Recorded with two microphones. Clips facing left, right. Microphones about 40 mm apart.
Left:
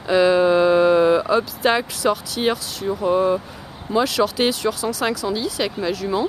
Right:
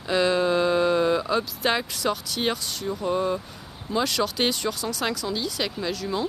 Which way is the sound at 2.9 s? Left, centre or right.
Centre.